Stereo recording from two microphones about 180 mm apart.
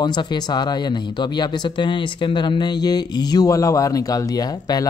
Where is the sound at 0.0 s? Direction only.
25° left (ahead or behind).